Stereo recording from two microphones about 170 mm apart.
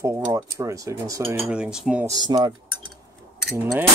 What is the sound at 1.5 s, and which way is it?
Cutlery, 5° right (ahead or behind).